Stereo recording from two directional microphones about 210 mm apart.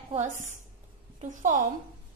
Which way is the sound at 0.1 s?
35° right (ahead or behind).